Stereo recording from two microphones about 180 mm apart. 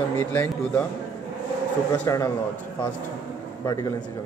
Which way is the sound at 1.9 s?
15° left (ahead or behind).